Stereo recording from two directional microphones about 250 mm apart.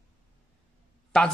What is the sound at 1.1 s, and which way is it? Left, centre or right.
Speech, centre.